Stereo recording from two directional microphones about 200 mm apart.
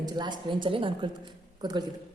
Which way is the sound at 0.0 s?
20° right (ahead or behind).